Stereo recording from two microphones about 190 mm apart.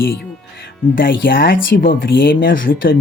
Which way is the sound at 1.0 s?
50° left (ahead or behind).